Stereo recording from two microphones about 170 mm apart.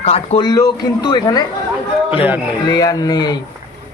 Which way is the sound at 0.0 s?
40° left (ahead or behind).